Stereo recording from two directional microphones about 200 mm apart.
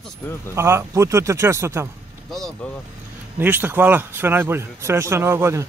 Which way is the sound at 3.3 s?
10° right (ahead or behind).